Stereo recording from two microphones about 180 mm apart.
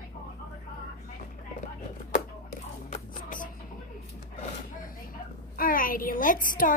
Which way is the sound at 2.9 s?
50° left (ahead or behind).